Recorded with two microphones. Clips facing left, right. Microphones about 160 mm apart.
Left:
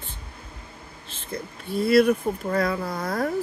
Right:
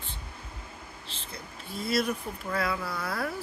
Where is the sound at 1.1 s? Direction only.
55° left (ahead or behind).